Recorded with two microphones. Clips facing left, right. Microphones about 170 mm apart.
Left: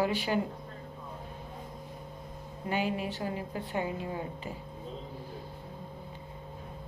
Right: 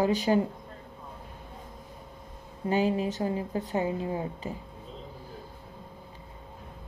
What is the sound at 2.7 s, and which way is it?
Speech, 40° right (ahead or behind).